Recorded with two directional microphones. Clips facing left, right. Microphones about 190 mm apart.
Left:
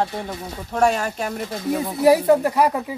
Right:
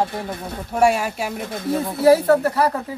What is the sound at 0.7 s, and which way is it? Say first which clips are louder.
Speech: right 2 dB; 10° right (ahead or behind).